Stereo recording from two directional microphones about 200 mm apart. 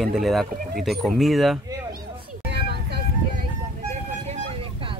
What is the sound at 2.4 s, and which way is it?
Vehicle, 55° right (ahead or behind).